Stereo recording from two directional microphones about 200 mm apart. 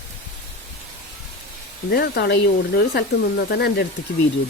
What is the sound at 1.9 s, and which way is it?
Speech, 55° left (ahead or behind).